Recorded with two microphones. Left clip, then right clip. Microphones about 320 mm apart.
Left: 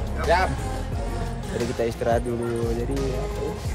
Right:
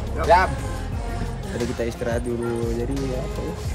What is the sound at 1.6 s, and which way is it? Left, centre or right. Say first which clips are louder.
Speech: left 1 dB; centre.